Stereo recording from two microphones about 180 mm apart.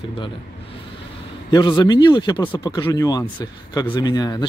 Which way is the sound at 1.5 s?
25° left (ahead or behind).